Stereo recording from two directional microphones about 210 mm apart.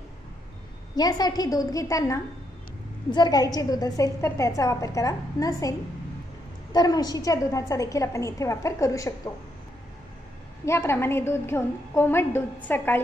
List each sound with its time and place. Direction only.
0.9 s a woman's voice: 20° left (ahead or behind)
10.6 s a woman's voice: 10° left (ahead or behind)